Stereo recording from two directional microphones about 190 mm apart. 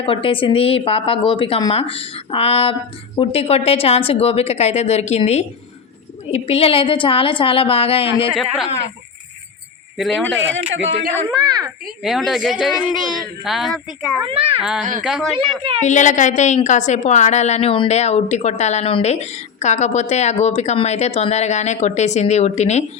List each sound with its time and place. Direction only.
0.0 s a woman's voice: 30° left (ahead or behind)
8.4 s speech: centre (ahead or behind)
10.0 s speech: centre (ahead or behind)
10.5 s speech: 75° right (ahead or behind)
11.3 s a child's voice: 20° right (ahead or behind)
12.0 s speech: centre (ahead or behind)
14.3 s a child's voice: 30° right (ahead or behind)
14.6 s speech: 5° right (ahead or behind)
15.8 s a woman's voice: 40° left (ahead or behind)